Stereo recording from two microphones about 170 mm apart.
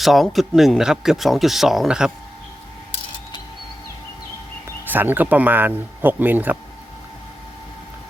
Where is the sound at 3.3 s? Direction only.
25° left (ahead or behind).